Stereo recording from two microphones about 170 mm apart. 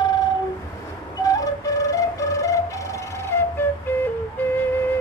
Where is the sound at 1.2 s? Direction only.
20° left (ahead or behind).